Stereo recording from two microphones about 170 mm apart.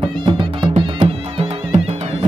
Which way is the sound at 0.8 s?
35° right (ahead or behind).